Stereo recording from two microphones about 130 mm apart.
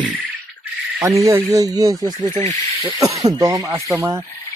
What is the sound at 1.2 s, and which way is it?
Speech, 25° right (ahead or behind).